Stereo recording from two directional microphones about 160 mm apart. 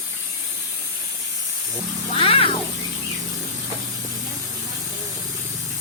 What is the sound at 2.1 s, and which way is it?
Cat, 35° left (ahead or behind).